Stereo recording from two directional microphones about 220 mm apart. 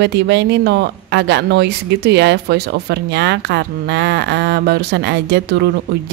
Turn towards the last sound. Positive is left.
turn(degrees=-50)  # may be behind; listen again after turning